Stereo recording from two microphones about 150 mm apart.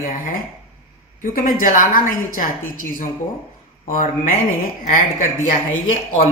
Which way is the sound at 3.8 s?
65° left (ahead or behind).